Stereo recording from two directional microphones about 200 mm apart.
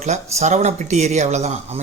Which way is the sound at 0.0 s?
35° right (ahead or behind).